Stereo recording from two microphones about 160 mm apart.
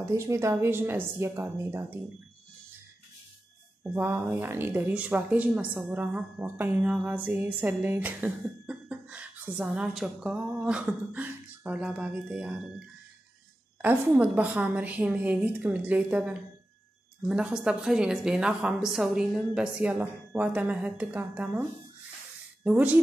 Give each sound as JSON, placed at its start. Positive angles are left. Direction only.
{"t": 0.0, "sound": "speech", "side_deg": -15}
{"t": 3.8, "sound": "a woman's voice", "side_deg": -15}